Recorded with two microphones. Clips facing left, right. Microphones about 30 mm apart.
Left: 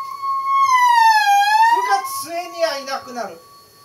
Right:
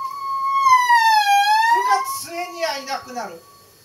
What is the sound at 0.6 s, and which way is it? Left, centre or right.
Police car, centre.